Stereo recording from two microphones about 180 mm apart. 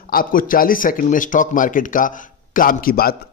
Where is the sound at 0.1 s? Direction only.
50° left (ahead or behind).